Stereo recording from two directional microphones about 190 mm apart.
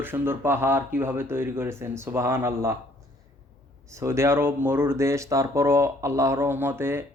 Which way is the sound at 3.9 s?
15° right (ahead or behind).